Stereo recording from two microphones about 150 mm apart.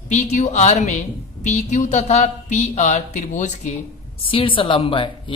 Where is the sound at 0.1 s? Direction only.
50° left (ahead or behind).